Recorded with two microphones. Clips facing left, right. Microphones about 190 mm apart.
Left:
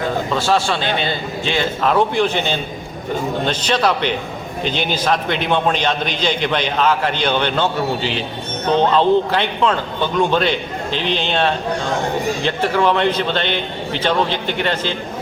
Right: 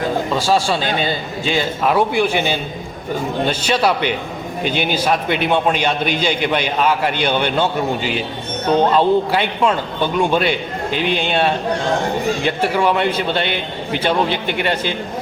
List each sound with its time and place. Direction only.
0.3 s a man's voice: 10° right (ahead or behind)
0.8 s a man's voice: 40° right (ahead or behind)
1.0 s a man's voice: 10° right (ahead or behind)